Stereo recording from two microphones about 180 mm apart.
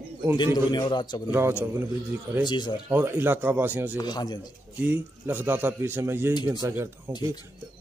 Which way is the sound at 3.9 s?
25° left (ahead or behind).